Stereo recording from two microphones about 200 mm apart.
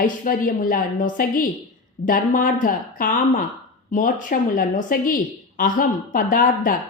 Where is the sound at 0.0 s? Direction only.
45° left (ahead or behind).